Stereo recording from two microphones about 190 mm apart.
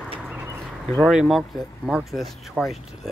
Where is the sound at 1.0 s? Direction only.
Centre (ahead or behind).